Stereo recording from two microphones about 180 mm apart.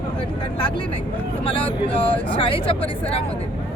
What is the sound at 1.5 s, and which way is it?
Speech, 30° left (ahead or behind).